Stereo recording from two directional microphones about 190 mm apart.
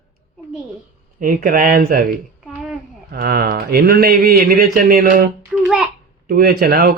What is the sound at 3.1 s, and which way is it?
Speech, 55° right (ahead or behind).